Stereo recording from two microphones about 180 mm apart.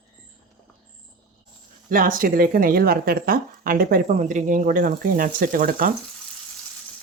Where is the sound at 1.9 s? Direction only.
50° right (ahead or behind).